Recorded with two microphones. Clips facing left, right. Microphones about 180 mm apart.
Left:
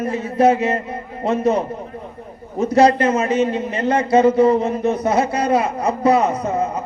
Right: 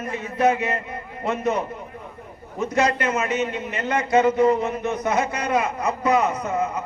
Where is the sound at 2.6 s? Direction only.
35° left (ahead or behind).